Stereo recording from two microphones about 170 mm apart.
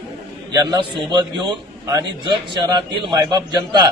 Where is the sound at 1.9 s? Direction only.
25° right (ahead or behind).